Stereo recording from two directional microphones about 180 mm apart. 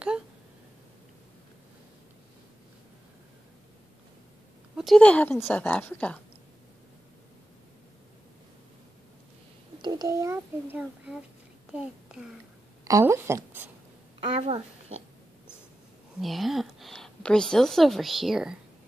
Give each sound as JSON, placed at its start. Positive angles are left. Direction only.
{"t": 4.7, "sound": "a woman's voice", "side_deg": 0}
{"t": 9.8, "sound": "a child's voice", "side_deg": -20}
{"t": 12.8, "sound": "speech", "side_deg": -15}
{"t": 14.3, "sound": "speech", "side_deg": -35}
{"t": 16.2, "sound": "a woman's voice", "side_deg": 0}